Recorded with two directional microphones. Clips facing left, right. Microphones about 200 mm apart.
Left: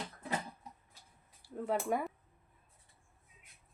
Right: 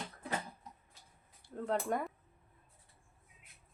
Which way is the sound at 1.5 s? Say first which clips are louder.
Left 1 dB; 5° left (ahead or behind).